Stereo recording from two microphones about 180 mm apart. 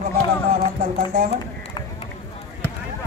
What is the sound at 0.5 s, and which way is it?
Music, 45° right (ahead or behind).